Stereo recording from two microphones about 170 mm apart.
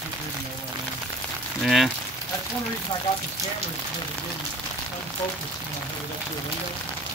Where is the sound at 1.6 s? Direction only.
Centre (ahead or behind).